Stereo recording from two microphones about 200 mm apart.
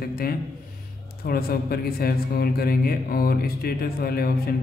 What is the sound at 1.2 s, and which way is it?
Speech, 50° left (ahead or behind).